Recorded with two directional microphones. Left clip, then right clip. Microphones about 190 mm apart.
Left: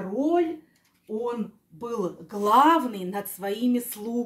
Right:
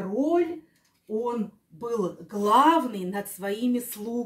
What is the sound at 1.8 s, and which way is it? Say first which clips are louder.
Speech: right 1 dB; 20° left (ahead or behind).